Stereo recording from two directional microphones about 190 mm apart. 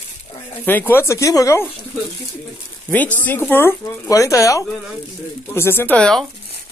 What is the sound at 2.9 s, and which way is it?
Speech, 10° left (ahead or behind).